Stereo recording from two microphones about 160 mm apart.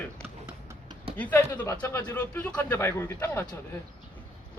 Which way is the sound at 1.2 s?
10° left (ahead or behind).